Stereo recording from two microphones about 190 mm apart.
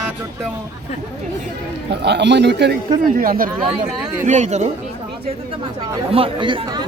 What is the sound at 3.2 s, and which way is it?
Speech, 50° right (ahead or behind).